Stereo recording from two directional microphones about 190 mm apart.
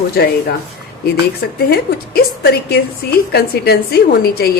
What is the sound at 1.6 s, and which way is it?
Speech, 55° left (ahead or behind).